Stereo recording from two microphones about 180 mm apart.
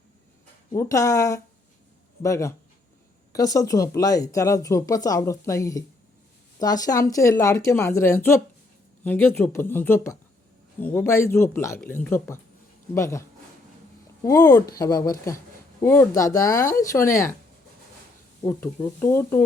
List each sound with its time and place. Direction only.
0.7 s a woman's voice: 15° left (ahead or behind)
14.3 s a woman's voice: 20° left (ahead or behind)
18.4 s a woman's voice: 10° left (ahead or behind)